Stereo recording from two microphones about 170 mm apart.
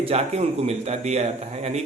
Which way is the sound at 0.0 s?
35° right (ahead or behind).